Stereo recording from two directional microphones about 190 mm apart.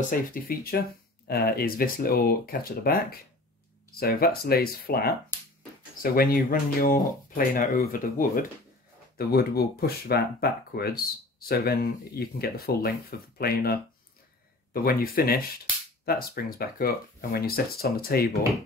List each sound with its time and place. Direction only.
0.1 s speech: 50° left (ahead or behind)
6.1 s speech: 50° left (ahead or behind)